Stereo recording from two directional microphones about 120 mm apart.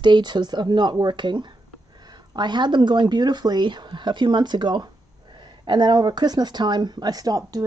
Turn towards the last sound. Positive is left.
turn(degrees=-30)  # may be behind; listen again after turning